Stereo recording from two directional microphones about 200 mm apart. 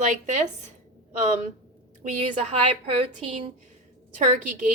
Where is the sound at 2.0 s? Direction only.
35° right (ahead or behind).